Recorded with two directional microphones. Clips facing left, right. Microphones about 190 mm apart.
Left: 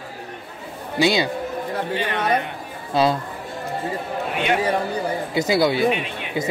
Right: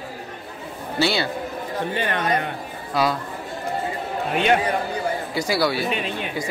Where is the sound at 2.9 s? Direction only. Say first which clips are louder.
Left 3 dB; 25° left (ahead or behind).